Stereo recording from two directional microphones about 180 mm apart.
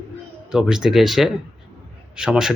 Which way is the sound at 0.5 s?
5° right (ahead or behind).